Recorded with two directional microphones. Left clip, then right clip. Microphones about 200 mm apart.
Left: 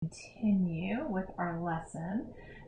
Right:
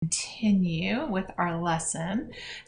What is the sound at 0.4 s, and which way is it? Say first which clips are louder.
A woman's voice: right 4 dB; 15° right (ahead or behind).